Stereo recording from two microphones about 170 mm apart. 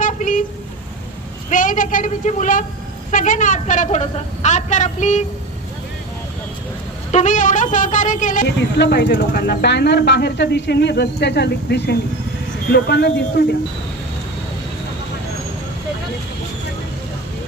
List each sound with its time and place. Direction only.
0.0 s vehicle: 50° left (ahead or behind)
1.5 s a woman's voice: 50° left (ahead or behind)
7.1 s a woman's voice: 45° left (ahead or behind)
8.4 s speech: 80° left